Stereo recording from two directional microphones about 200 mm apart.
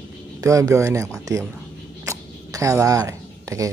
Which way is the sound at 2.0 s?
15° right (ahead or behind).